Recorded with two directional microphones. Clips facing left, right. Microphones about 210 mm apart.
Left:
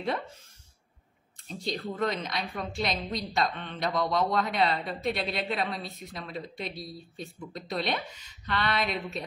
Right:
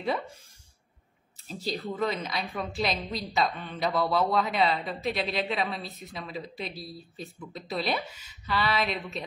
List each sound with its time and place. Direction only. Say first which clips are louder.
1.5 s a woman's voice: right 1 dB; 5° right (ahead or behind)